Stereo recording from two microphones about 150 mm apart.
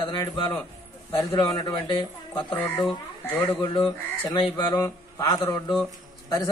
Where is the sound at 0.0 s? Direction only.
30° left (ahead or behind).